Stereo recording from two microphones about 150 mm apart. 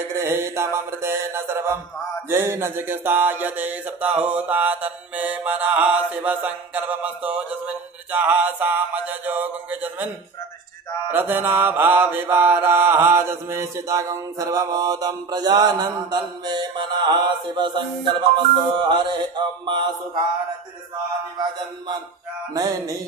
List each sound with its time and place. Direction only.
0.2 s mantra: 15° right (ahead or behind)
11.1 s mantra: 15° right (ahead or behind)